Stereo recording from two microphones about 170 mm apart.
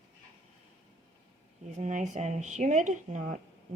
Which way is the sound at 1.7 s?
45° right (ahead or behind).